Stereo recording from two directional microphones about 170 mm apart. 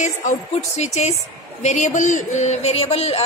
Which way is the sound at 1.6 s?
45° left (ahead or behind).